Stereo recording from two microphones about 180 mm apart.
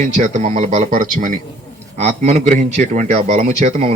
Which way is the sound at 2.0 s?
35° right (ahead or behind).